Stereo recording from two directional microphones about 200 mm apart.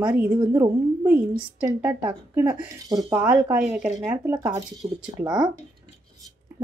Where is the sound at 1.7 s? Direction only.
10° right (ahead or behind).